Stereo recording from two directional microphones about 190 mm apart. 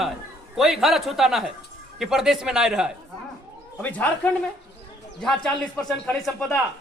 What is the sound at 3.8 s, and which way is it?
A man's voice, 10° left (ahead or behind).